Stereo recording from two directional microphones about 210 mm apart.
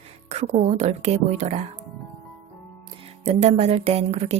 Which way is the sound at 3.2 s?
30° right (ahead or behind).